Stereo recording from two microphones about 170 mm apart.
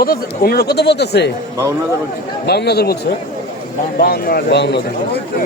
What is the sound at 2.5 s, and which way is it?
Speech, 75° left (ahead or behind).